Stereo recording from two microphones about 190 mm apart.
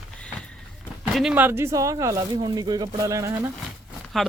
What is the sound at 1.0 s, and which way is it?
Speech, centre (ahead or behind).